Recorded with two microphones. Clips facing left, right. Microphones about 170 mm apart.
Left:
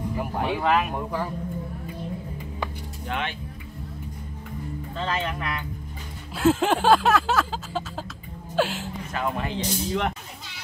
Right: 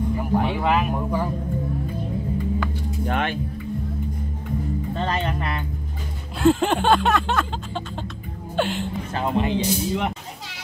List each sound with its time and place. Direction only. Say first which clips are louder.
0.4 s music: left 1 dB; centre (ahead or behind)
3.1 s speech: right 5 dB; 50° right (ahead or behind)
4.9 s speech: right 1 dB; 35° right (ahead or behind)
6.4 s music: right 2 dB; centre (ahead or behind)
9.1 s speech: right 5 dB; 25° right (ahead or behind)
9.6 s speech: right 3 dB; 10° right (ahead or behind)